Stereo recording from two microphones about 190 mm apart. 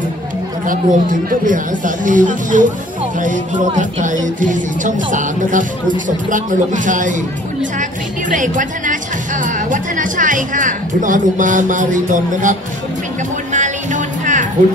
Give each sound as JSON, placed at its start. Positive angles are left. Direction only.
{"t": 0.7, "sound": "speech", "side_deg": -45}
{"t": 8.3, "sound": "speech", "side_deg": -45}
{"t": 13.5, "sound": "music", "side_deg": -40}